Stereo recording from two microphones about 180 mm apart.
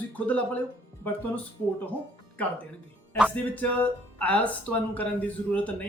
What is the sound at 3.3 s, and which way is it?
Speech, 10° left (ahead or behind).